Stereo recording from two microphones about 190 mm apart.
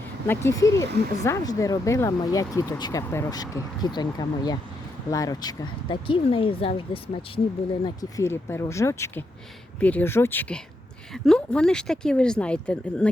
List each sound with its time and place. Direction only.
0.3 s speech: 15° left (ahead or behind)
7.9 s speech: 15° left (ahead or behind)